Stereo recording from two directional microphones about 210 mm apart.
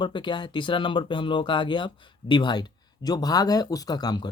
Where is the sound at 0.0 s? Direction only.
20° left (ahead or behind).